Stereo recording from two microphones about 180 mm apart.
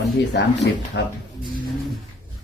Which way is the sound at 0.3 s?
70° left (ahead or behind).